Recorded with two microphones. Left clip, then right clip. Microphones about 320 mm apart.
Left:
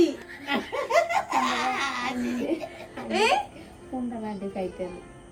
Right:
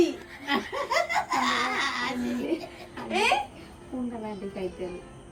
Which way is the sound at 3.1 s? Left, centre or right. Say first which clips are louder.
Left 1 dB; centre.